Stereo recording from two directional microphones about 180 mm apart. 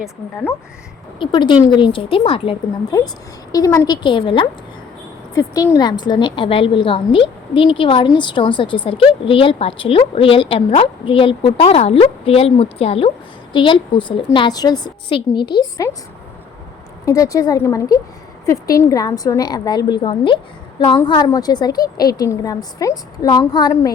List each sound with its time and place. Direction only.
1.2 s a woman's voice: 25° left (ahead or behind)
17.1 s a woman's voice: 20° left (ahead or behind)